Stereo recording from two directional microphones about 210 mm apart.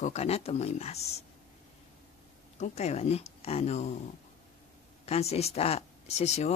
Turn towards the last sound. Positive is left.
turn(degrees=30)  # may be behind; listen again after turning